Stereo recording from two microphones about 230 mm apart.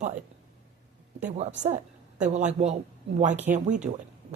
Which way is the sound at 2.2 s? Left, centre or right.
Right.